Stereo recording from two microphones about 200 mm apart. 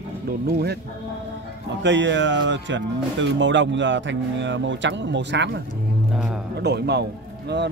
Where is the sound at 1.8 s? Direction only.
65° right (ahead or behind).